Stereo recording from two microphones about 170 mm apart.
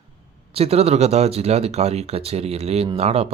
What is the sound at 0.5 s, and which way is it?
Speech, 35° right (ahead or behind).